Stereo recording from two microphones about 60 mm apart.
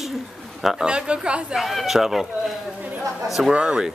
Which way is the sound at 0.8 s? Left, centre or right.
Centre.